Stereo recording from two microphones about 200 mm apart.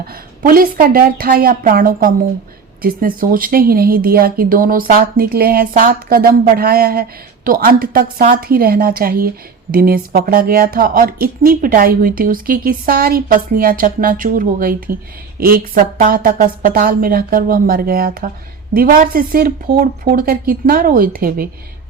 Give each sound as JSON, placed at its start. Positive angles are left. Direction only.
{"t": 0.0, "sound": "speech", "side_deg": -45}